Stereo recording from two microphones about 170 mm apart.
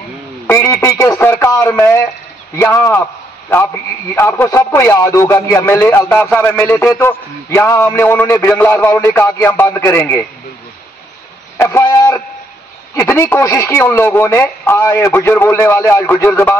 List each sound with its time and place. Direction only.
0.5 s a man's voice: 15° left (ahead or behind)
11.5 s a sound: 15° left (ahead or behind)
12.9 s a man's voice: 15° left (ahead or behind)